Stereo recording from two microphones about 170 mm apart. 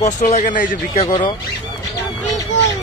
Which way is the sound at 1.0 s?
25° left (ahead or behind).